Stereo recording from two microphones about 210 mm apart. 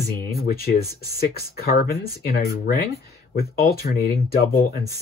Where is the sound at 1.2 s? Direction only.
45° left (ahead or behind).